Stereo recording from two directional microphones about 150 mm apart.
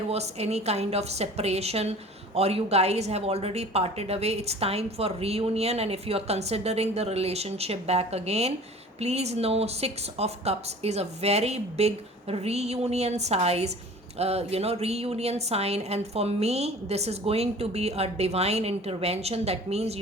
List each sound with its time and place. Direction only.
0.1 s a woman's voice: 45° right (ahead or behind)